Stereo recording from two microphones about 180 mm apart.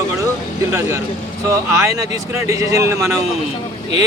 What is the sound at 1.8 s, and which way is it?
A man's voice, 15° right (ahead or behind).